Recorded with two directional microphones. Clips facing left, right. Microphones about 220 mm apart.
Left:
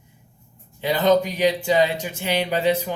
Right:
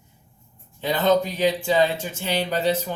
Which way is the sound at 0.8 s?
10° left (ahead or behind).